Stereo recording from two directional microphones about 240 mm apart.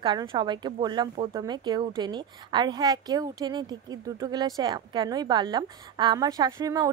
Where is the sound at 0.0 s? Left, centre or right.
Centre.